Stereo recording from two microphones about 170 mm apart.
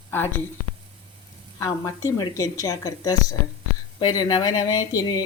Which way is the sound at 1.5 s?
20° left (ahead or behind).